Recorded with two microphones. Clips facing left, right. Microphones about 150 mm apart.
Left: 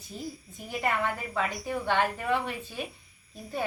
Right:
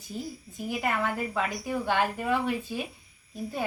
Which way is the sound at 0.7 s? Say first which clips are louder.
Even; 5° right (ahead or behind).